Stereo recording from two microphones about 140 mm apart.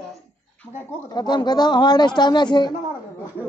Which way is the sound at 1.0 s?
30° left (ahead or behind).